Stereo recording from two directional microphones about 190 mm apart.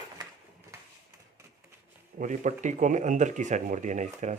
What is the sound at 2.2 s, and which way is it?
Speech, 40° right (ahead or behind).